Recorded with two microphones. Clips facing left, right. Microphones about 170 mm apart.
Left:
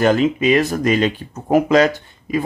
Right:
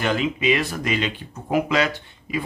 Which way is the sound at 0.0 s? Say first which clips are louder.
Left 7 dB; 45° left (ahead or behind).